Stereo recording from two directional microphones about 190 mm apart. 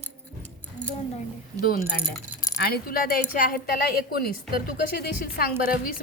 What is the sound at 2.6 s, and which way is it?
A woman's voice, 55° left (ahead or behind).